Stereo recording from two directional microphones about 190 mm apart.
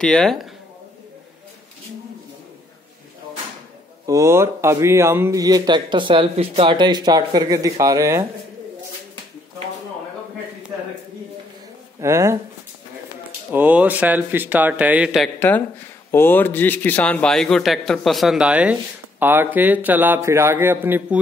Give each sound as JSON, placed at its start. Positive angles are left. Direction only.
{"t": 0.0, "sound": "a man's voice", "side_deg": 5}
{"t": 4.0, "sound": "speech", "side_deg": -15}
{"t": 12.0, "sound": "speech", "side_deg": -15}
{"t": 13.5, "sound": "a man's voice", "side_deg": -10}